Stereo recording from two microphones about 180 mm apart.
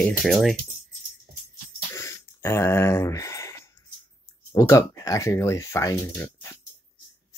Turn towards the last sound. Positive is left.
turn(degrees=15)  # may be behind; listen again after turning